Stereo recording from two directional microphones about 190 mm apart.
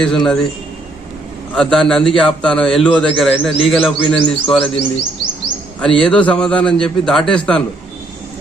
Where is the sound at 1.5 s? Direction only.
5° left (ahead or behind).